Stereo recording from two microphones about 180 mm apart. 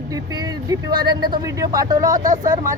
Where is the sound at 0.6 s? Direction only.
25° right (ahead or behind).